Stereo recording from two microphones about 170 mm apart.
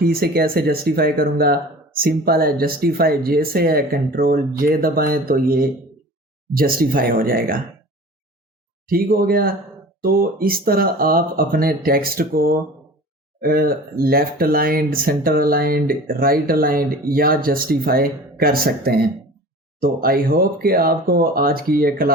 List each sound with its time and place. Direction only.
0.0 s speech: 65° right (ahead or behind)
8.9 s speech: 60° right (ahead or behind)